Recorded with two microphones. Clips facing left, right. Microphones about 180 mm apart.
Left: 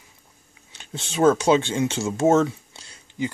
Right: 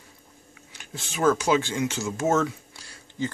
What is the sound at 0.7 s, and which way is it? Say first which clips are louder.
Speech: left 7 dB; 25° left (ahead or behind).